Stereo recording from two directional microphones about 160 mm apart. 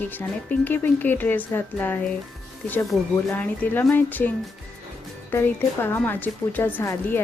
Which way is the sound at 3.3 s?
10° left (ahead or behind).